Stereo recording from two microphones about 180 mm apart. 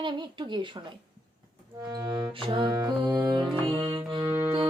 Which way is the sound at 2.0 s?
25° right (ahead or behind).